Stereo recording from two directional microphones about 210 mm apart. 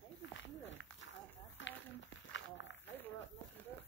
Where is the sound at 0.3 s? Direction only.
60° left (ahead or behind).